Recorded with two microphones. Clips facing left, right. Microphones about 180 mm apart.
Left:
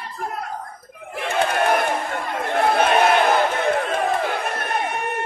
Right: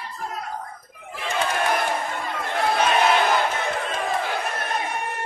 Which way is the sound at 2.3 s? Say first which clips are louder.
Left 5 dB; 55° left (ahead or behind).